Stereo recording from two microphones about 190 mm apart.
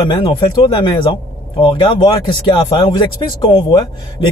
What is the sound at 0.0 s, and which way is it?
Speech, 25° left (ahead or behind).